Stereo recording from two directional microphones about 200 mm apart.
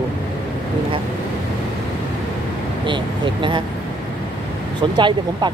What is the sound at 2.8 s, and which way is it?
Speech, 25° right (ahead or behind).